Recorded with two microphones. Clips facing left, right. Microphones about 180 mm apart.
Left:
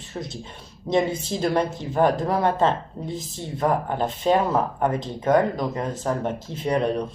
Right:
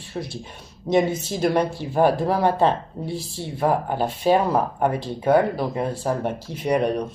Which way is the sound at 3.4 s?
5° right (ahead or behind).